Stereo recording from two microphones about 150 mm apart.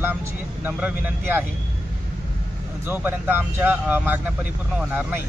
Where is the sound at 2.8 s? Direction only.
15° right (ahead or behind).